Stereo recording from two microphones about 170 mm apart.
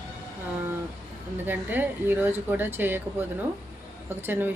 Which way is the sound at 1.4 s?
10° right (ahead or behind).